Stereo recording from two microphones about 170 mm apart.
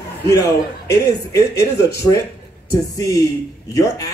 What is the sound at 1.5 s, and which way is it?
Speech, 75° left (ahead or behind).